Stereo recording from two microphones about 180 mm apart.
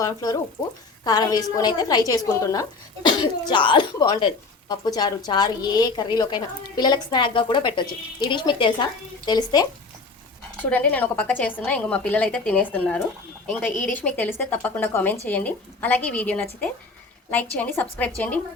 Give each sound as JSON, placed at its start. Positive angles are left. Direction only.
{"t": 0.0, "sound": "a woman's voice", "side_deg": 20}
{"t": 10.7, "sound": "a woman's voice", "side_deg": 10}